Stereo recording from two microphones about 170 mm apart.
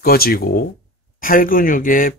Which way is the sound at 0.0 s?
60° left (ahead or behind).